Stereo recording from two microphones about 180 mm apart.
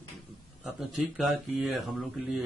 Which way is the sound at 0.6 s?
Centre (ahead or behind).